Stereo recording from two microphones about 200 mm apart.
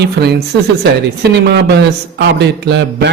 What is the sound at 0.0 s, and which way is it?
Speech, 55° right (ahead or behind).